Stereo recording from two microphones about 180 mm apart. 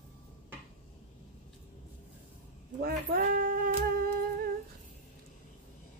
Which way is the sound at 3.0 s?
50° right (ahead or behind).